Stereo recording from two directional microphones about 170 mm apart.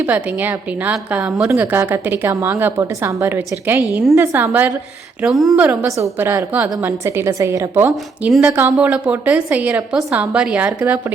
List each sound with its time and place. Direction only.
0.0 s a woman's voice: 10° right (ahead or behind)
5.2 s a woman's voice: centre (ahead or behind)
5.6 s a woman's voice: 15° right (ahead or behind)